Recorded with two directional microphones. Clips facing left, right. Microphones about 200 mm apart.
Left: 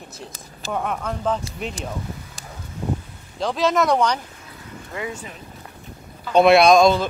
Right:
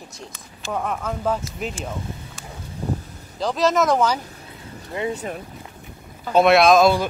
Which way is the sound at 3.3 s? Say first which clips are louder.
Right 1 dB; centre (ahead or behind).